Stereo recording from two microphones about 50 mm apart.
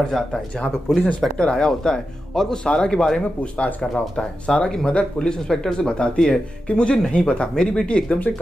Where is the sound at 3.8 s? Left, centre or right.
Centre.